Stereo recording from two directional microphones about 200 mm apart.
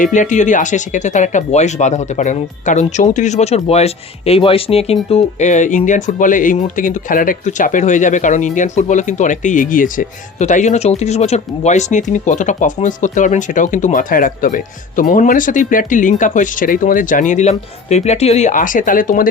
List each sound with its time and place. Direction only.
0.0 s speech: 40° left (ahead or behind)